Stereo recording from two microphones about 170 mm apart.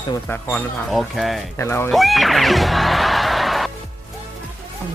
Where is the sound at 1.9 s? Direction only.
Centre (ahead or behind).